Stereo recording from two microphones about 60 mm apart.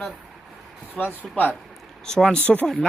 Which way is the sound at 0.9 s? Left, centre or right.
Left.